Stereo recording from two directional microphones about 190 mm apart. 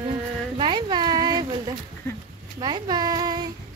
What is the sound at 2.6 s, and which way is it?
Speech, 20° right (ahead or behind).